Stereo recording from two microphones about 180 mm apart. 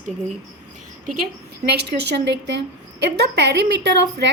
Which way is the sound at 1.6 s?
65° right (ahead or behind).